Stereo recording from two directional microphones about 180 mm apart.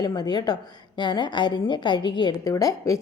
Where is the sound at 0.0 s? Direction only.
20° left (ahead or behind).